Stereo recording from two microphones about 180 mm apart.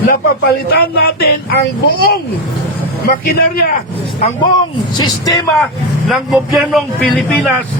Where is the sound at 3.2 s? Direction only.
55° left (ahead or behind).